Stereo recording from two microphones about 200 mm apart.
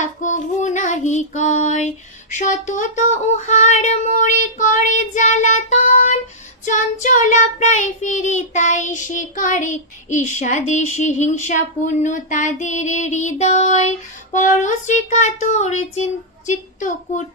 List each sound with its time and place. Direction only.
0.0 s child singing: 35° left (ahead or behind)